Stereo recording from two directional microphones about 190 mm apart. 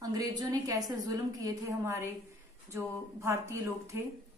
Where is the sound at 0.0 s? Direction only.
20° right (ahead or behind).